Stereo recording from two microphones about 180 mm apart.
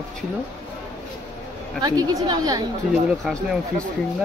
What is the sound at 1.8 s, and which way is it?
Speech, 20° right (ahead or behind).